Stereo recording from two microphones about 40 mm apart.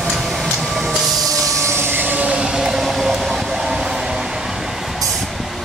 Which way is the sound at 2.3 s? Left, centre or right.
Centre.